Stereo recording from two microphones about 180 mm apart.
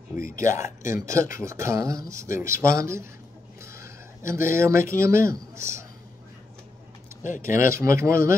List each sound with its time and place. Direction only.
0.1 s speech: 15° right (ahead or behind)
7.4 s speech: 15° right (ahead or behind)